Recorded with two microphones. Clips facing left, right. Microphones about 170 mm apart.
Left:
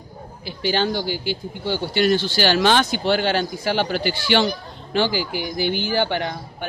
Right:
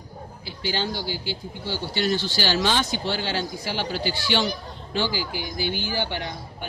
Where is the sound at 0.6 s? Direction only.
60° left (ahead or behind).